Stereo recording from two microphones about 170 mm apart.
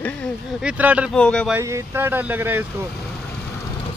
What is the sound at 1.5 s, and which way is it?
Speech, 15° right (ahead or behind).